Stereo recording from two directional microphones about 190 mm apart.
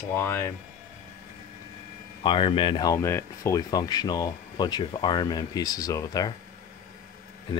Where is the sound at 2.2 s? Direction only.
25° left (ahead or behind).